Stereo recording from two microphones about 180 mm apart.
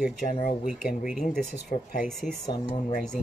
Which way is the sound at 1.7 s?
50° left (ahead or behind).